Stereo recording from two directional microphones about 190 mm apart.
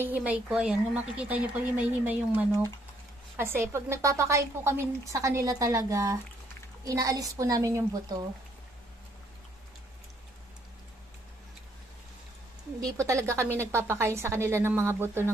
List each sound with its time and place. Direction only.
0.0 s a woman's voice: 10° right (ahead or behind)
12.8 s a woman's voice: 15° right (ahead or behind)